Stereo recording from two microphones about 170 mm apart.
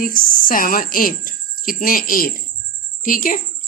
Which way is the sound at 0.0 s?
55° left (ahead or behind).